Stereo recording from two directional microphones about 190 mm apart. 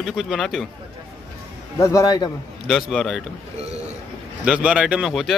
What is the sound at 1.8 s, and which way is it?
Speech, 15° left (ahead or behind).